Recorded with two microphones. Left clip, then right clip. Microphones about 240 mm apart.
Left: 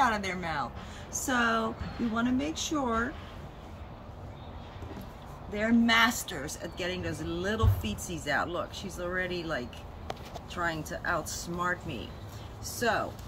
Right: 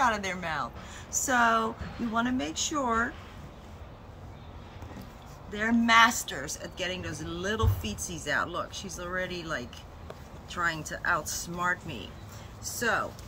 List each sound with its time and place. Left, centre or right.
0.0 s speech: centre
5.5 s speech: centre